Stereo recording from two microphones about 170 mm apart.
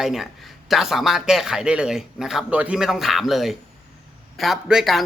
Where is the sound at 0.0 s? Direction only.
Centre (ahead or behind).